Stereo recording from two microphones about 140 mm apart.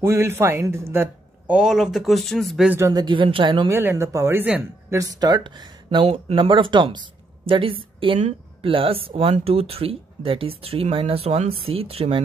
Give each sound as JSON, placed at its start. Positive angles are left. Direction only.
{"t": 0.0, "sound": "a man's voice", "side_deg": -20}
{"t": 1.6, "sound": "speech", "side_deg": -5}
{"t": 2.9, "sound": "a woman's voice", "side_deg": -30}
{"t": 3.7, "sound": "a woman's voice", "side_deg": -20}